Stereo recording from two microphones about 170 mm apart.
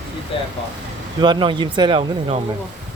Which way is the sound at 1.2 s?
30° right (ahead or behind).